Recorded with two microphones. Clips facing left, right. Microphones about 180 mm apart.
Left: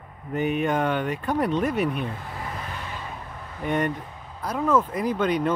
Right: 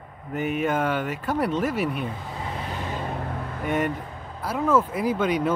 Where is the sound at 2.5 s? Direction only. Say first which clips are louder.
Right 4 dB; 30° right (ahead or behind); by 3.7 s 60° right (ahead or behind).